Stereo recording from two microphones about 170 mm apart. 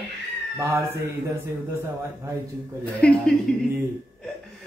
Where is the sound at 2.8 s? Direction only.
5° left (ahead or behind).